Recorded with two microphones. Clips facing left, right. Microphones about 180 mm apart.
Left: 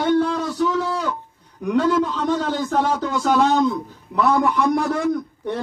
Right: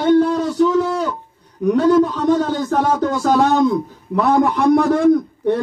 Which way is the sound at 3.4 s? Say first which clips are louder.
Right 3 dB; 60° right (ahead or behind).